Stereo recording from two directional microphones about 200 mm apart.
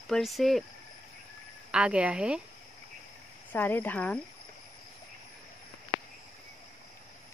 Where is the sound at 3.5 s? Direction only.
10° left (ahead or behind).